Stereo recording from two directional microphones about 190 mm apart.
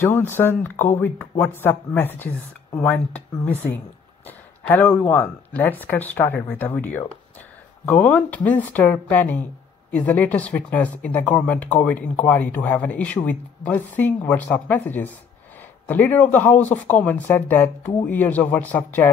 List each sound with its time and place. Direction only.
0.0 s speech: 10° left (ahead or behind)